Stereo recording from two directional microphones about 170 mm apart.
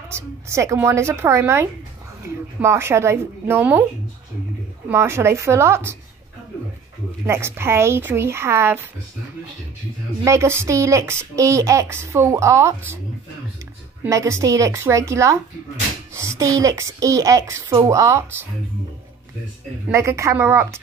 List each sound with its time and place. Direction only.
0.1 s speech: 15° right (ahead or behind)
4.8 s speech: 15° right (ahead or behind)
7.2 s speech: 15° right (ahead or behind)
10.2 s speech: 15° right (ahead or behind)
14.0 s speech: 20° right (ahead or behind)
19.9 s speech: 15° right (ahead or behind)